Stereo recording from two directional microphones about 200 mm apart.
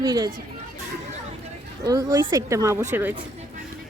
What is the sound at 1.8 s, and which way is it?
A woman's voice, 20° right (ahead or behind).